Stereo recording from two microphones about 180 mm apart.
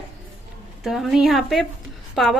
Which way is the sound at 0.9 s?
Centre (ahead or behind).